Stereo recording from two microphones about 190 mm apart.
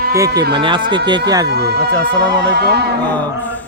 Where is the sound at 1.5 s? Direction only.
60° right (ahead or behind).